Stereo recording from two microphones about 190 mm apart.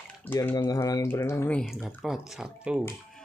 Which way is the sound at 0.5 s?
20° left (ahead or behind).